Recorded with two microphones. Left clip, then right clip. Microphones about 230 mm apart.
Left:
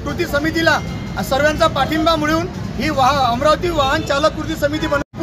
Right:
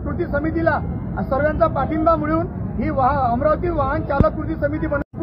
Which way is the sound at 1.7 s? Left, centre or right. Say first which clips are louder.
Left 2 dB; left.